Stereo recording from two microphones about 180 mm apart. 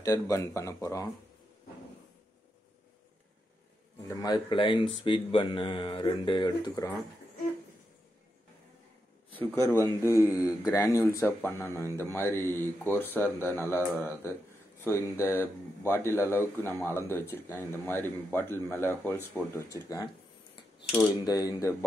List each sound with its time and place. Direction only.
0.0 s speech: 20° left (ahead or behind)
4.1 s speech: 25° left (ahead or behind)
9.3 s speech: 15° left (ahead or behind)